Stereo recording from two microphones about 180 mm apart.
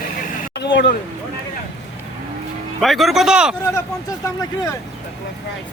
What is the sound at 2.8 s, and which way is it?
Speech, centre (ahead or behind).